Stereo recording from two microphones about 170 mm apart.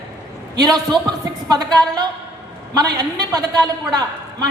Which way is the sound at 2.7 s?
25° right (ahead or behind).